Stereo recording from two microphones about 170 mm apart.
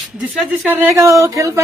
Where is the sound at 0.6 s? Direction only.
10° right (ahead or behind).